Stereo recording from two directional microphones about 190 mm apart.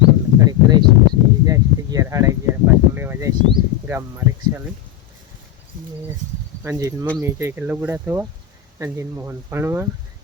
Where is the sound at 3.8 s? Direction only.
10° right (ahead or behind).